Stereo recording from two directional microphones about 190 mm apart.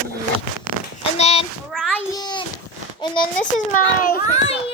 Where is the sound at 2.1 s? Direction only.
20° left (ahead or behind).